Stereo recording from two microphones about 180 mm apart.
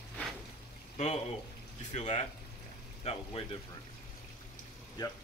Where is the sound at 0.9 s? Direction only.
35° left (ahead or behind).